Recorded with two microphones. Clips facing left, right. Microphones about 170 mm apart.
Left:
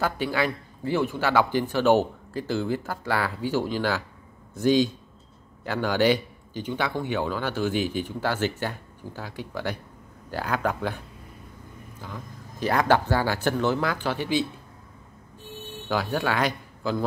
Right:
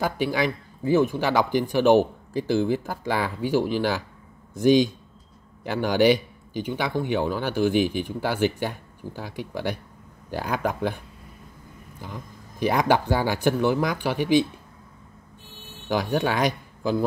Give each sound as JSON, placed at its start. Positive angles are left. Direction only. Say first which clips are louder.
{"t": 0.0, "sound": "speech", "louder": "right 2 dB", "side_deg": -15}
{"t": 12.0, "sound": "speech", "louder": "right 1 dB", "side_deg": -15}
{"t": 15.9, "sound": "speech", "louder": "right 2 dB", "side_deg": -15}